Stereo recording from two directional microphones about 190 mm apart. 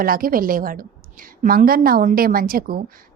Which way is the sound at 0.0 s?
50° right (ahead or behind).